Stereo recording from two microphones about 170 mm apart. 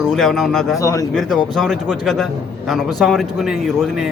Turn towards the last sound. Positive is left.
turn(degrees=0)  # may be behind; listen again after turning